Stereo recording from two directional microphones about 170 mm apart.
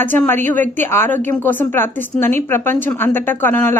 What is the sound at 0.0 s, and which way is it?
A woman's voice, 10° left (ahead or behind).